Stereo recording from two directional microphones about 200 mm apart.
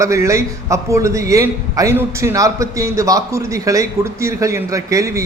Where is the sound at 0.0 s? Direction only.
15° right (ahead or behind).